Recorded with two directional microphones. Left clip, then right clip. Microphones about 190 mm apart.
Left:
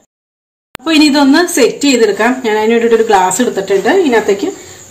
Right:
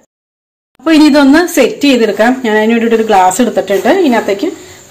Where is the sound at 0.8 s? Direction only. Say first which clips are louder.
Right 2 dB; 20° right (ahead or behind).